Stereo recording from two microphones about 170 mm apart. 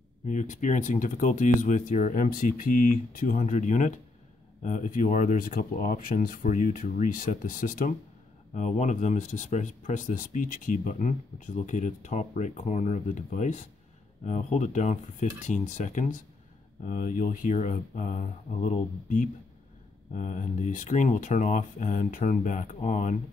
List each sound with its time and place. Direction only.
0.2 s speech: 45° left (ahead or behind)